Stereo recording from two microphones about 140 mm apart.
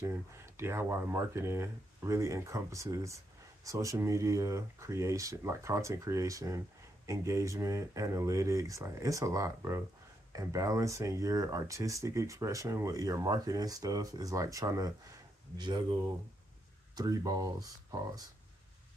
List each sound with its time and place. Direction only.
0.0 s speech: 15° right (ahead or behind)
16.9 s speech: 25° right (ahead or behind)